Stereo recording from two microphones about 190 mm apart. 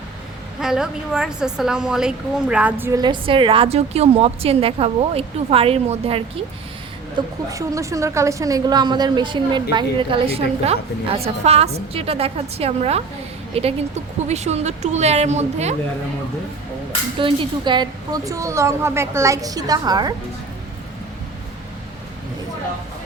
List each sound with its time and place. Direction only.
0.6 s a woman's voice: 5° right (ahead or behind)
3.0 s a woman's voice: 25° right (ahead or behind)
17.2 s a woman's voice: 25° right (ahead or behind)